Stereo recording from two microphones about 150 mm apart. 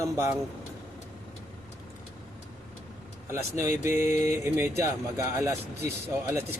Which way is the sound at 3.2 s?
15° right (ahead or behind).